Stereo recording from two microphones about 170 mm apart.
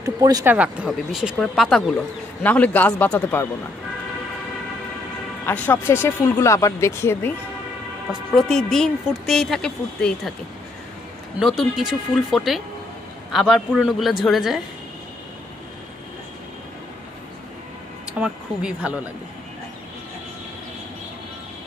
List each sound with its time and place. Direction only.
0.0 s speech: 20° right (ahead or behind)
0.6 s a woman's voice: 5° right (ahead or behind); by 3.4 s 10° left (ahead or behind)
5.4 s speech: 10° left (ahead or behind)
8.1 s a woman's voice: centre (ahead or behind)
11.3 s a woman's voice: centre (ahead or behind)
18.2 s a woman's voice: 5° right (ahead or behind)